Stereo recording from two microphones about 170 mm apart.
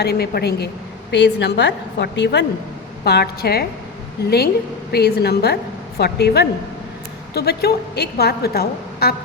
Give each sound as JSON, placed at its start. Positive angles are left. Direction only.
{"t": 0.0, "sound": "a woman's voice", "side_deg": 70}
{"t": 1.1, "sound": "a woman's voice", "side_deg": 90}
{"t": 3.0, "sound": "a woman's voice", "side_deg": 70}
{"t": 4.9, "sound": "a woman's voice", "side_deg": 70}